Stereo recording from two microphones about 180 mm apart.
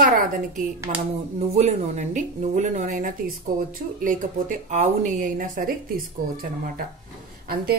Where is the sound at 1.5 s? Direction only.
40° right (ahead or behind).